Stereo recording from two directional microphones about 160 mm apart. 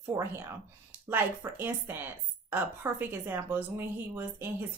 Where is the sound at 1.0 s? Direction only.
15° right (ahead or behind).